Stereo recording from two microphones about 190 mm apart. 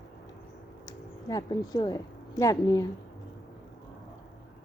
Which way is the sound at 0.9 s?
20° left (ahead or behind).